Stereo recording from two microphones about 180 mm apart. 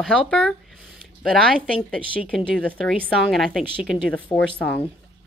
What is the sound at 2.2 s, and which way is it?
A woman's voice, 5° right (ahead or behind).